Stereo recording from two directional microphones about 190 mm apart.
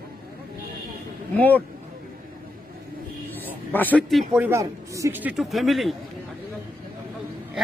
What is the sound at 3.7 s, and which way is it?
Speech, 10° left (ahead or behind).